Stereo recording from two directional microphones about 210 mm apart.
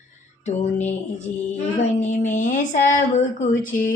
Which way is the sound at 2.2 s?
35° left (ahead or behind).